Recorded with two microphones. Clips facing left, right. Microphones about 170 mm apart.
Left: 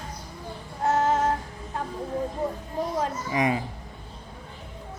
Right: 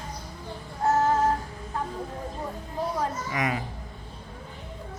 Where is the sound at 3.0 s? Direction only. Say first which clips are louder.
Left 3 dB; 25° left (ahead or behind).